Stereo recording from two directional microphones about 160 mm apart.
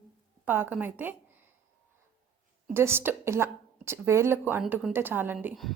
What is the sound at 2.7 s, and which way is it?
A woman's voice, 15° right (ahead or behind).